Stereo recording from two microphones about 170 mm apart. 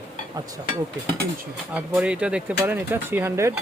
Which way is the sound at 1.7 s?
10° right (ahead or behind).